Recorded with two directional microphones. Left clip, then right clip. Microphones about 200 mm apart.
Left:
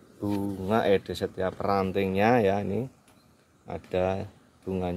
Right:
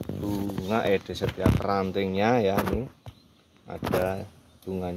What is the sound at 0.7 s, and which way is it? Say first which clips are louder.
Speech: left 1 dB; 5° left (ahead or behind).